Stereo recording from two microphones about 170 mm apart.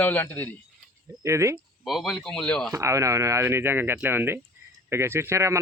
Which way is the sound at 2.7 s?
15° right (ahead or behind).